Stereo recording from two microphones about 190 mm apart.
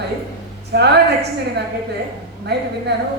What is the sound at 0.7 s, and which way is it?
Speech, 60° right (ahead or behind).